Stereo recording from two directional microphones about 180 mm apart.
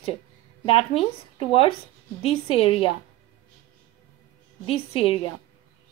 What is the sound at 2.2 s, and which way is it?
Speech, 30° left (ahead or behind).